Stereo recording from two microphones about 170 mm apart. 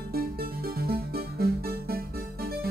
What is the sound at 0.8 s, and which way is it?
Music, 65° right (ahead or behind).